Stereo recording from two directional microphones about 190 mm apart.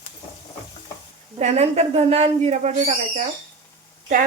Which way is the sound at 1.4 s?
35° right (ahead or behind).